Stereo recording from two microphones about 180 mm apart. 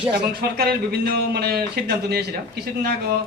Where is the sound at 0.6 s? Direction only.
60° right (ahead or behind).